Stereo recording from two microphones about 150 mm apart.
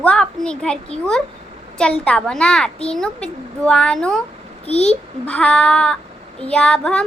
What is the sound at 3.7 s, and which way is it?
Child singing, 5° left (ahead or behind).